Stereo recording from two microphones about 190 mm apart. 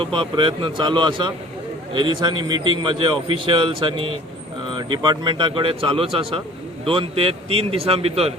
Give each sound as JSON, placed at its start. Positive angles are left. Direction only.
{"t": 0.0, "sound": "a man's voice", "side_deg": -25}